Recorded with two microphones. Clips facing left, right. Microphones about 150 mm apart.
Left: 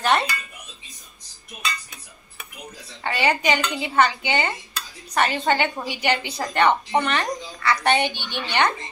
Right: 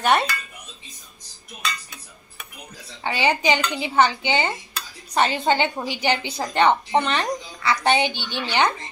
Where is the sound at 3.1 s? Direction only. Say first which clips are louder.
Right 1 dB; 25° right (ahead or behind).